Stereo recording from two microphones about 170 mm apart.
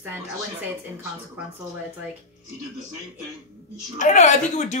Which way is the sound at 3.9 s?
45° left (ahead or behind).